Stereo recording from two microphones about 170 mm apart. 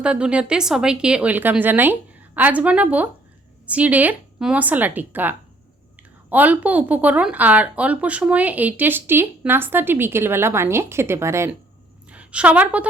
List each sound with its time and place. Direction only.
0.0 s a woman's voice: 5° right (ahead or behind)
6.3 s a woman's voice: 10° right (ahead or behind)